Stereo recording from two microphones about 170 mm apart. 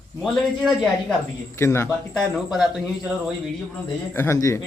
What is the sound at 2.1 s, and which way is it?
Speech, centre (ahead or behind).